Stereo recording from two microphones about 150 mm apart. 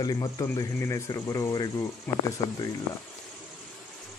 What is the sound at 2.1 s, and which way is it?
Speech, 15° left (ahead or behind).